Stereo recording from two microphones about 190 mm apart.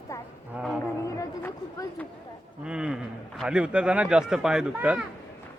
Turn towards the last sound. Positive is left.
turn(degrees=-5)  # may be behind; listen again after turning